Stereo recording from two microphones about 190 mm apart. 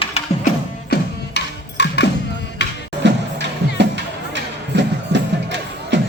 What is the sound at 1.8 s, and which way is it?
Music, 65° left (ahead or behind).